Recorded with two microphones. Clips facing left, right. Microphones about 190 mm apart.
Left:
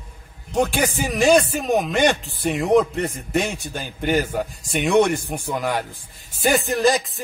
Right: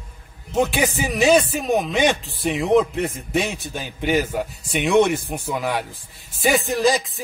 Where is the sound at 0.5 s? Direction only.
Centre (ahead or behind).